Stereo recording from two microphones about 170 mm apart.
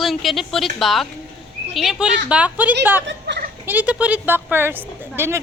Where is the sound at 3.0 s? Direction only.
85° right.